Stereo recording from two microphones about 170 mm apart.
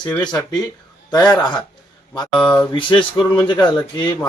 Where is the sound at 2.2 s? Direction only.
5° left (ahead or behind).